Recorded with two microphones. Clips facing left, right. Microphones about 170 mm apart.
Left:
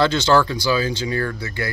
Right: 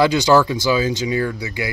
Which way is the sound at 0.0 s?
15° right (ahead or behind).